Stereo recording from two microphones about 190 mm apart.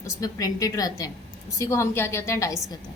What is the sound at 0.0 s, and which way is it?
A woman's voice, 20° left (ahead or behind).